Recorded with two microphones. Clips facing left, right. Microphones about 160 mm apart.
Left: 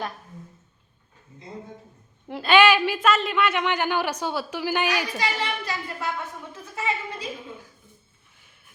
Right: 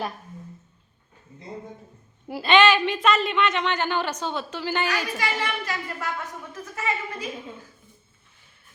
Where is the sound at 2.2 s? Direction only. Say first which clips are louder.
Right 1 dB; 5° right (ahead or behind).